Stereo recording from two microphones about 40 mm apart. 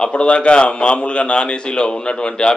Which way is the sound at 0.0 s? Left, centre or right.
Left.